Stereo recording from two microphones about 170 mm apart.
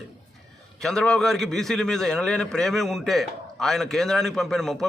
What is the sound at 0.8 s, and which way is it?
A man's voice, 5° left (ahead or behind).